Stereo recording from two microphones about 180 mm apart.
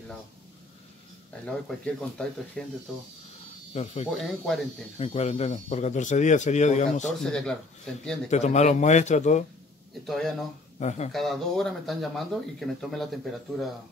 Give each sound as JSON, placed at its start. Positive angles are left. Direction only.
{"t": 1.4, "sound": "speech", "side_deg": 5}
{"t": 3.7, "sound": "speech", "side_deg": 35}
{"t": 4.2, "sound": "speech", "side_deg": 0}
{"t": 4.9, "sound": "speech", "side_deg": 35}
{"t": 7.2, "sound": "speech", "side_deg": 5}
{"t": 8.3, "sound": "speech", "side_deg": 40}
{"t": 10.0, "sound": "speech", "side_deg": 0}
{"t": 10.8, "sound": "speech", "side_deg": 40}
{"t": 11.1, "sound": "speech", "side_deg": 0}